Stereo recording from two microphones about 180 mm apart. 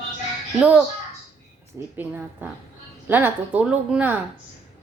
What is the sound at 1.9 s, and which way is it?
A woman's voice, 10° right (ahead or behind).